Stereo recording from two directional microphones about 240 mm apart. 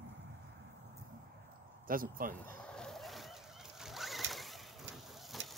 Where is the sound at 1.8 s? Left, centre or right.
Right.